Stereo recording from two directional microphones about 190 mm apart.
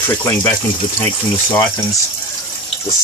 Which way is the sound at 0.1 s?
15° left (ahead or behind).